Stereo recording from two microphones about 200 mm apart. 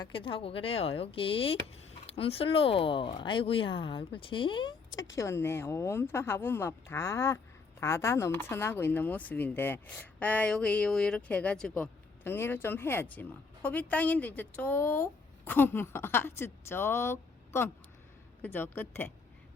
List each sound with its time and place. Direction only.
0.0 s speech: 25° left (ahead or behind)
5.1 s speech: 15° left (ahead or behind)